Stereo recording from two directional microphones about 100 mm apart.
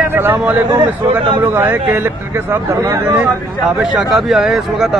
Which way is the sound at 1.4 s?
20° right (ahead or behind).